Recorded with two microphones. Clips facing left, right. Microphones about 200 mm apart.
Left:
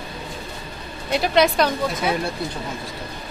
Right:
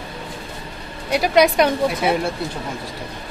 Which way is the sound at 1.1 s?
10° right (ahead or behind).